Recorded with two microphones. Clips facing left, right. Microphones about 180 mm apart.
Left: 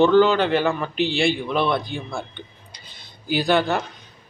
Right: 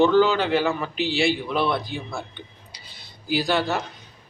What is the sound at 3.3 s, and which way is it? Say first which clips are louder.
Speech: left 3 dB; centre (ahead or behind).